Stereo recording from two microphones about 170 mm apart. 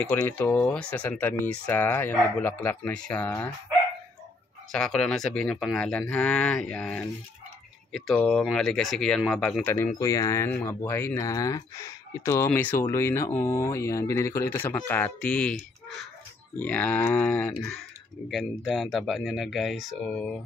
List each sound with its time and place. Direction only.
0.1 s speech: 10° left (ahead or behind)
4.7 s speech: 5° left (ahead or behind)